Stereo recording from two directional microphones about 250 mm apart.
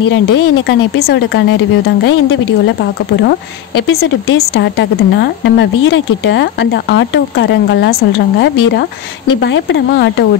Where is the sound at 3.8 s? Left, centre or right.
Left.